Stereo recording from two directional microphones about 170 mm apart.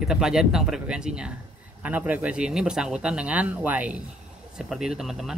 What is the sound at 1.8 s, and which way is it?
Speech, 10° right (ahead or behind).